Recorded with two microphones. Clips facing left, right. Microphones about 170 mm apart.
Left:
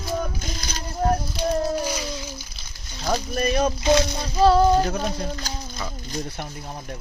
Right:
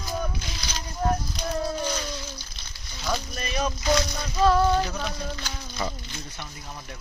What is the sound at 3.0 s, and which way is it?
Speech, 45° left (ahead or behind).